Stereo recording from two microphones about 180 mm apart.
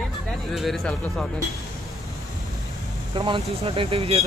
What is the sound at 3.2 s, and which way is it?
Speech, 25° right (ahead or behind).